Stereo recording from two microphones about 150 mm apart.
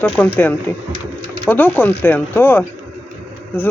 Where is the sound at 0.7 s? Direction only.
15° left (ahead or behind).